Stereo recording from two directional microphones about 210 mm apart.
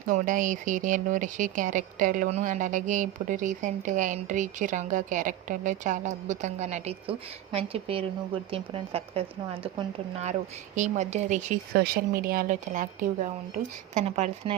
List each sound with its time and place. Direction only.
0.1 s speech: 35° right (ahead or behind)
11.7 s speech: 45° right (ahead or behind)